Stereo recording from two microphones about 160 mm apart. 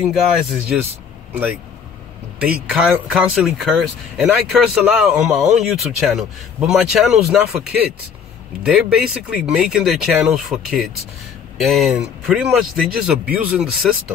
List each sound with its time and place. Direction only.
0.0 s speech: centre (ahead or behind)
8.6 s speech: 5° right (ahead or behind)